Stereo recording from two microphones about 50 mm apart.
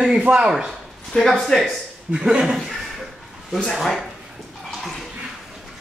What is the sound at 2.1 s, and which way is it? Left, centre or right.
Speech, right.